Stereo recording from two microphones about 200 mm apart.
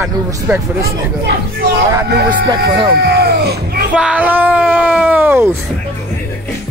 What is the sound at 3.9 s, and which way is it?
Speech, 5° right (ahead or behind).